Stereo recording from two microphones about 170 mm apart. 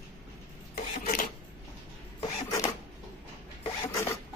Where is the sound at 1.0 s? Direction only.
50° left (ahead or behind).